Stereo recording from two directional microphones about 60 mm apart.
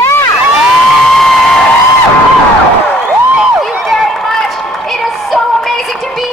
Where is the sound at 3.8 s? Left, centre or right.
Centre.